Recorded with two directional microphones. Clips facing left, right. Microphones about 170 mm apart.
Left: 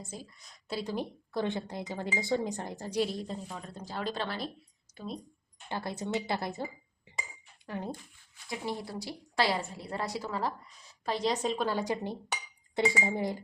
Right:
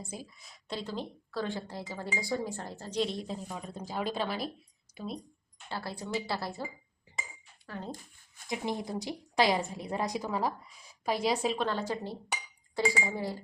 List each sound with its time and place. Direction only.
0.1 s speech: 10° right (ahead or behind)
5.6 s speech: 20° left (ahead or behind)
7.7 s speech: 15° left (ahead or behind)
8.4 s a woman's voice: 20° right (ahead or behind); by 11.8 s centre (ahead or behind)
11.8 s speech: 15° left (ahead or behind)